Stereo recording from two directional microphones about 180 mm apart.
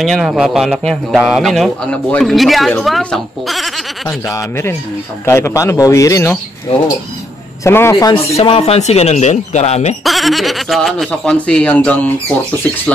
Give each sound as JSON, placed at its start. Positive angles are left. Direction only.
{"t": 0.0, "sound": "a man's voice", "side_deg": 0}
{"t": 4.3, "sound": "a man's voice", "side_deg": 15}
{"t": 7.6, "sound": "a man's voice", "side_deg": 15}
{"t": 8.4, "sound": "speech", "side_deg": 35}
{"t": 10.0, "sound": "a man's voice", "side_deg": 0}